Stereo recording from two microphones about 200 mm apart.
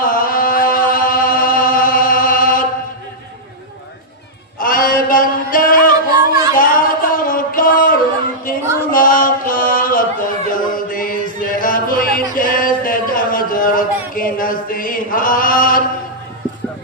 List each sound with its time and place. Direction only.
0.0 s chant: 45° left (ahead or behind)
4.6 s male singing: 45° left (ahead or behind)
6.6 s a sound: 45° left (ahead or behind)